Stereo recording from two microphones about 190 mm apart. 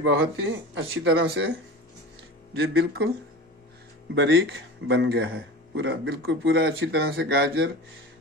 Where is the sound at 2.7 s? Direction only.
55° right (ahead or behind).